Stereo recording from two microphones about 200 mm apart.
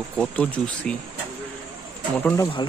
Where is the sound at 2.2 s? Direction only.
15° left (ahead or behind).